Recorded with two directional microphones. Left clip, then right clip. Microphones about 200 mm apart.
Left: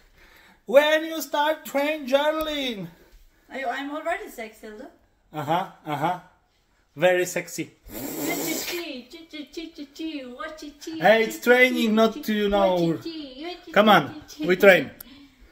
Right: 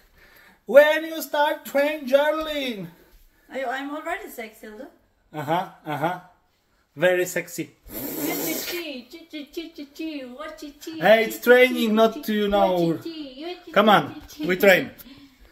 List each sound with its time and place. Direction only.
0.7 s speech: 15° left (ahead or behind)
3.4 s a woman's voice: 10° right (ahead or behind)
5.3 s speech: 20° left (ahead or behind)
7.5 s a sound: 15° left (ahead or behind)
9.9 s a woman's voice: 5° right (ahead or behind)
11.0 s speech: 15° left (ahead or behind); by 14.9 s 30° left (ahead or behind)